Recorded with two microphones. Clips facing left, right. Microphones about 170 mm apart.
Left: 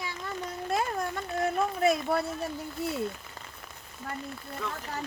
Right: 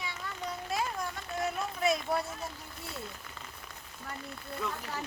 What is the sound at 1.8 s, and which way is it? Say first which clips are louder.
Speech: left 3 dB; 60° left (ahead or behind).